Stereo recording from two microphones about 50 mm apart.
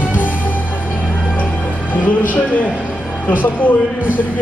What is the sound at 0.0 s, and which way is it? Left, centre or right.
Music, left.